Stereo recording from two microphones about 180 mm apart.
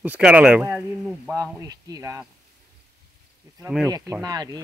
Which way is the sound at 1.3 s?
20° right (ahead or behind).